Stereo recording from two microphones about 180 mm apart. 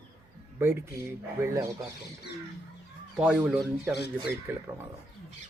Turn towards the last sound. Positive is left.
turn(degrees=-10)  # may be behind; listen again after turning